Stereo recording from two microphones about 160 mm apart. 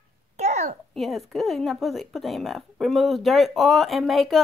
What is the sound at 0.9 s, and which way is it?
Speech, centre (ahead or behind).